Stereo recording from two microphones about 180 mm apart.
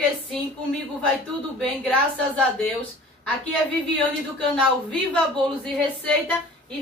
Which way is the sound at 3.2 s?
5° left (ahead or behind).